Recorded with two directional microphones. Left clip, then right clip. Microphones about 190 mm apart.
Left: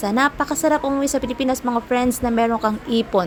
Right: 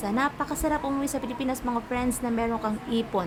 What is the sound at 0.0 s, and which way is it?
A woman's voice, 35° left (ahead or behind).